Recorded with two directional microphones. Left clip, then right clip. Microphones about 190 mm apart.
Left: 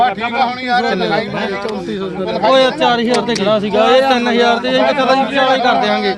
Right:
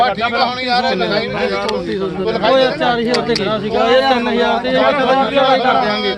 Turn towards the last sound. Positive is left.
turn(degrees=55)  # may be behind; listen again after turning